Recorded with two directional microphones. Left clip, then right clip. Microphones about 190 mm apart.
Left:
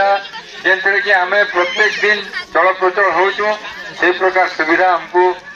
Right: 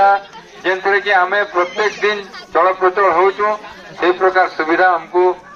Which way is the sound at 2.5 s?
10° left (ahead or behind).